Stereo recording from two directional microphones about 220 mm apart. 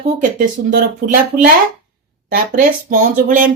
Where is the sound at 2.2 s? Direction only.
40° right (ahead or behind).